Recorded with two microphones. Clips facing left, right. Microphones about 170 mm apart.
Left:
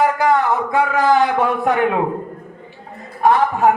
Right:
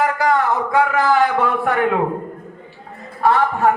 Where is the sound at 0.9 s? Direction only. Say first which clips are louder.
Left 1 dB; 20° left (ahead or behind).